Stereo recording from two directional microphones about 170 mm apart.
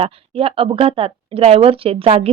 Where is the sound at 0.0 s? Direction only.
35° right (ahead or behind).